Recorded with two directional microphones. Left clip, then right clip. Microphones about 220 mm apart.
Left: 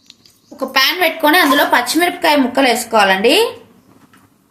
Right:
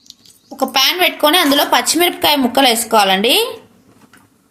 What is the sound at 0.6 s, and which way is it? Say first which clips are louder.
A woman's voice: even; 35° right (ahead or behind).